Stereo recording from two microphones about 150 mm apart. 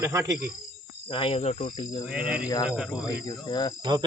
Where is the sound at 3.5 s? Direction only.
30° left (ahead or behind).